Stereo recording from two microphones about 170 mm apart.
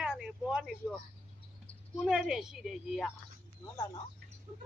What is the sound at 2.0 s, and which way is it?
A man's voice, 5° right (ahead or behind).